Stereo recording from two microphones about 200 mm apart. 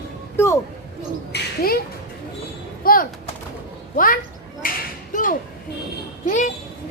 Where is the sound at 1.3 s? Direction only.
50° left (ahead or behind).